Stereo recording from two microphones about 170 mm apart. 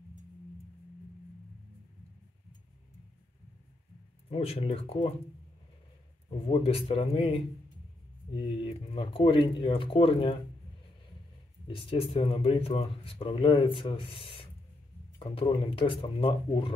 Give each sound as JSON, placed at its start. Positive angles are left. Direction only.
{"t": 4.3, "sound": "speech", "side_deg": 35}
{"t": 6.4, "sound": "speech", "side_deg": 35}
{"t": 8.6, "sound": "speech", "side_deg": 35}
{"t": 11.6, "sound": "speech", "side_deg": 30}